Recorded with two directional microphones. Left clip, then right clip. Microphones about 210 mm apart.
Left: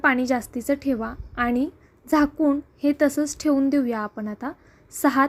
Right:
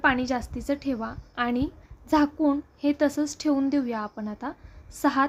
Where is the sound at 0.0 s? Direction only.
15° left (ahead or behind).